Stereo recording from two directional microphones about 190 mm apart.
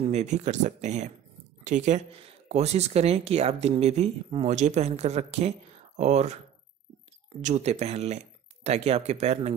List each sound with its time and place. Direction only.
0.0 s speech: 35° right (ahead or behind)
7.4 s speech: 35° right (ahead or behind)